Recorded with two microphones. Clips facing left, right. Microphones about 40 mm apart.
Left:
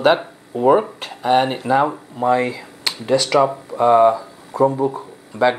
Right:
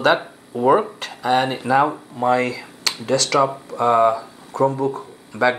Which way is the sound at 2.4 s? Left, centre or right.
Centre.